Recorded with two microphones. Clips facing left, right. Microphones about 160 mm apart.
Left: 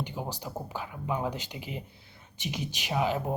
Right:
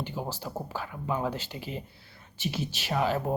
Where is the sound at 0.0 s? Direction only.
15° left (ahead or behind).